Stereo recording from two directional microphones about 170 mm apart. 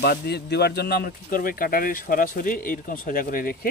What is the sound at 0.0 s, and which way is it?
A man's voice, 70° left (ahead or behind).